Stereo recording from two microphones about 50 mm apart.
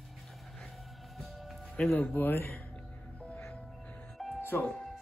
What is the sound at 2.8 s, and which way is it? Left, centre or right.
Music, left.